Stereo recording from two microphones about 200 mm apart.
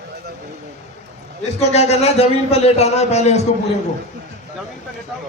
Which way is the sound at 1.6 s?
30° left (ahead or behind).